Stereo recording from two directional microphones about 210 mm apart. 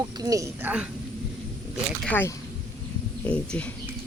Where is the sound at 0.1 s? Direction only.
15° right (ahead or behind).